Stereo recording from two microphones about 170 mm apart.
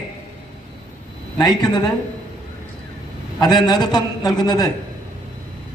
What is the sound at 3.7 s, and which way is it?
A woman's voice, 25° left (ahead or behind).